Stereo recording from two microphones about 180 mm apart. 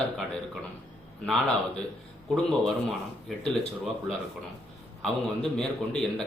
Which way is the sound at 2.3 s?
Centre (ahead or behind).